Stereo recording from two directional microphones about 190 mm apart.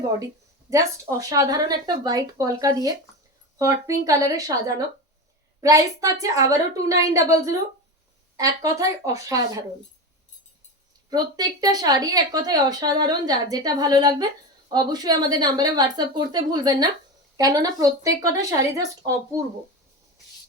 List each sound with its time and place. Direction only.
0.7 s a woman's voice: 15° right (ahead or behind)
11.1 s a woman's voice: 20° right (ahead or behind)